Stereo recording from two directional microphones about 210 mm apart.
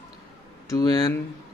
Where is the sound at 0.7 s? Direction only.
20° left (ahead or behind).